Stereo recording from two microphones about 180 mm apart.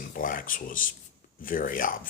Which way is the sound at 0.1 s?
50° left (ahead or behind).